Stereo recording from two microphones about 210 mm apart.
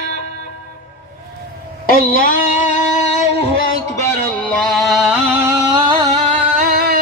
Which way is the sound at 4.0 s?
10° left (ahead or behind).